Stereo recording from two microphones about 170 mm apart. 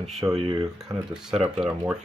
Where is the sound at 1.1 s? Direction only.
5° right (ahead or behind).